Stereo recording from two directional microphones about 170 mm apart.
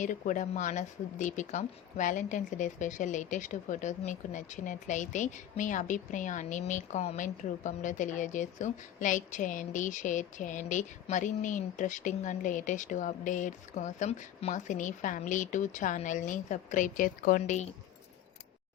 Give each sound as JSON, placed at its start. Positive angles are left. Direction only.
{"t": 0.0, "sound": "speech", "side_deg": 50}